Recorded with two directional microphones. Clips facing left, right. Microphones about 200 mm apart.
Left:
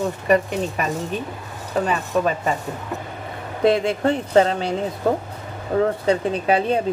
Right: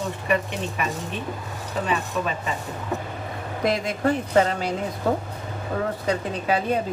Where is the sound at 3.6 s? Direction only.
30° left (ahead or behind).